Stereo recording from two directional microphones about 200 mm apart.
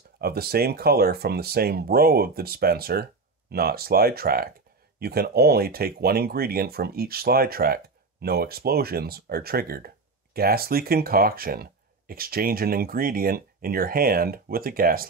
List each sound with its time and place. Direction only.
0.2 s speech: 50° right (ahead or behind)